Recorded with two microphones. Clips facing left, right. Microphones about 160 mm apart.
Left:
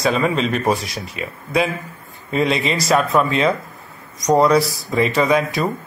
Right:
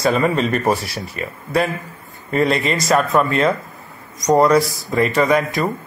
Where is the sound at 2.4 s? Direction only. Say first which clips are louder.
Right 1 dB; 15° left (ahead or behind).